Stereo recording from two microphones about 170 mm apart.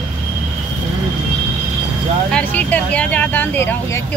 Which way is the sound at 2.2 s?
5° left (ahead or behind).